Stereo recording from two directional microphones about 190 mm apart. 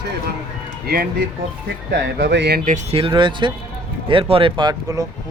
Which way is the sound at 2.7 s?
30° right (ahead or behind).